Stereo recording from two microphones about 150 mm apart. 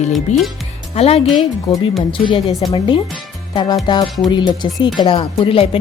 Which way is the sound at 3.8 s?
30° left (ahead or behind).